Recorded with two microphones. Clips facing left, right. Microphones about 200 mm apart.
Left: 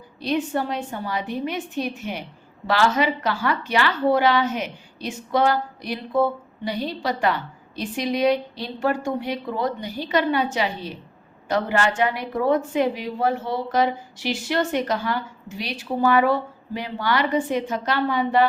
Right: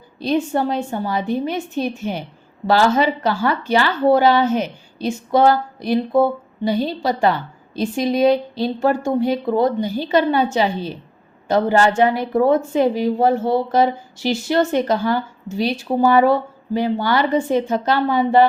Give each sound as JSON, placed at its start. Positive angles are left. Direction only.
{"t": 0.2, "sound": "a woman's voice", "side_deg": -30}